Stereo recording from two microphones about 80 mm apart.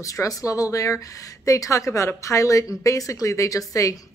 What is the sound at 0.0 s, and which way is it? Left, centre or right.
A woman's voice, left.